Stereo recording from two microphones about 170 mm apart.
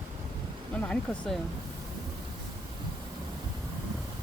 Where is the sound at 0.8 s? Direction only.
5° left (ahead or behind).